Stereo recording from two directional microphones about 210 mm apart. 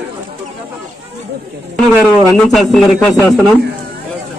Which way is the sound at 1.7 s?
Centre (ahead or behind).